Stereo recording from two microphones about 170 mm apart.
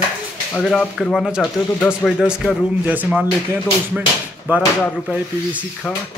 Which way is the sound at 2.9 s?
10° right (ahead or behind).